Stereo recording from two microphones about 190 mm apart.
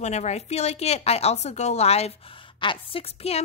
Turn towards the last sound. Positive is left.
turn(degrees=30)  # may be behind; listen again after turning